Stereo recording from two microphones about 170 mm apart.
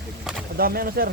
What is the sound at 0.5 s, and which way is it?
Speech, 60° right (ahead or behind).